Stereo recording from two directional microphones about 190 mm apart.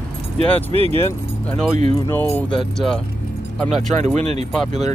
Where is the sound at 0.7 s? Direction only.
30° right (ahead or behind).